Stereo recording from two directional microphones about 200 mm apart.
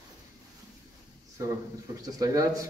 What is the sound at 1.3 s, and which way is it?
A man's voice, 15° right (ahead or behind).